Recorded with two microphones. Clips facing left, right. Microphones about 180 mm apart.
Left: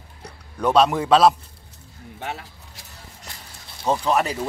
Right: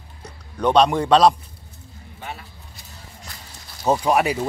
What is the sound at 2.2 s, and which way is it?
Speech, 70° left (ahead or behind).